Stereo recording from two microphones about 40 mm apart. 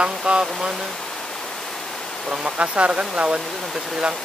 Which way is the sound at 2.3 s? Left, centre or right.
Right.